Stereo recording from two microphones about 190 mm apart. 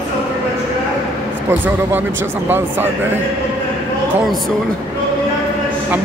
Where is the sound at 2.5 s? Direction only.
10° right (ahead or behind).